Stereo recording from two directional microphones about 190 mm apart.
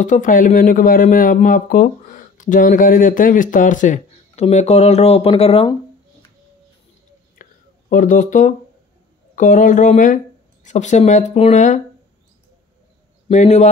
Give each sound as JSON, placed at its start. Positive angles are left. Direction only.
{"t": 0.0, "sound": "speech", "side_deg": 40}
{"t": 7.9, "sound": "speech", "side_deg": 45}
{"t": 13.3, "sound": "a man's voice", "side_deg": 35}